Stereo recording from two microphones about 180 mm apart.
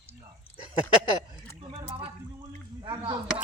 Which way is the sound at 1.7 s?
30° right (ahead or behind).